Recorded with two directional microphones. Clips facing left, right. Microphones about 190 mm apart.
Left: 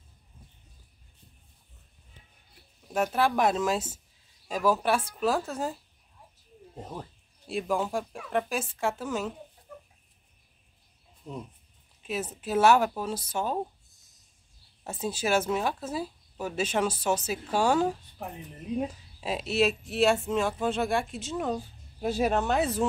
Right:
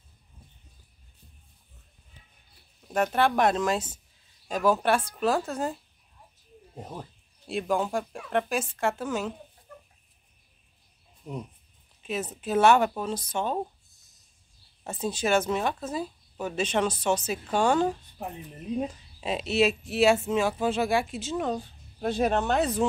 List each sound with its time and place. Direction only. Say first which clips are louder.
2.9 s speech: right 2 dB; centre (ahead or behind)
6.7 s speech: even; 10° right (ahead or behind)
11.3 s speech: right 2 dB; 15° right (ahead or behind)
12.0 s speech: right 1 dB; 5° left (ahead or behind)
14.8 s speech: right 2 dB; 5° left (ahead or behind)